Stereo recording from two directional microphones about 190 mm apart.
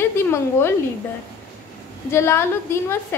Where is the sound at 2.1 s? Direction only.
15° left (ahead or behind).